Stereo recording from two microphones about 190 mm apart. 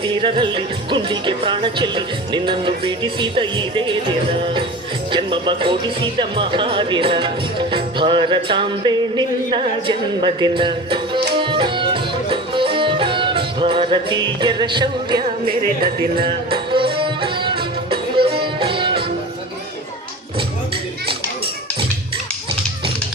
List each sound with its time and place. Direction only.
0.0 s speech: 25° right (ahead or behind)
5.1 s speech: 25° right (ahead or behind)
11.3 s tabla: 25° right (ahead or behind)
12.3 s music: 25° right (ahead or behind)
15.4 s speech: 50° right (ahead or behind)
16.2 s music: 25° right (ahead or behind)